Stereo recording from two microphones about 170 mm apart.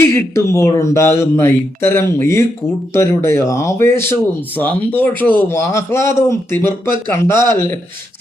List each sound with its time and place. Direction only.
0.3 s speech: 15° left (ahead or behind)